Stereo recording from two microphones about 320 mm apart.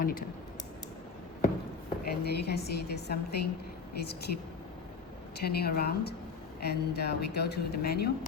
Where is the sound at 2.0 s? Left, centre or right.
Left.